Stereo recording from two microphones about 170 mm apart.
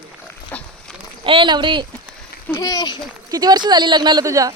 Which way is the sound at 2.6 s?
20° left (ahead or behind).